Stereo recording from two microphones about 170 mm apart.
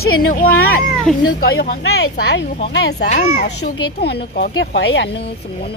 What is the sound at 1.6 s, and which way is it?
Speech, 80° left.